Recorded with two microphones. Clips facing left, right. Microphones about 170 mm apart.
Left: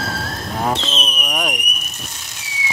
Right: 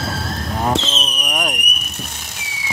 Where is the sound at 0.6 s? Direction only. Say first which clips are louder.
Right 1 dB; centre (ahead or behind).